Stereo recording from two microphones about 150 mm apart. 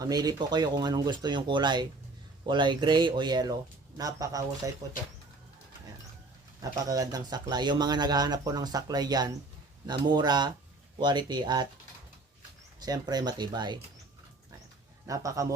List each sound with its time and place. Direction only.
0.0 s speech: 25° right (ahead or behind)
6.6 s speech: 25° right (ahead or behind)
12.8 s speech: 25° right (ahead or behind)
15.0 s speech: 20° right (ahead or behind)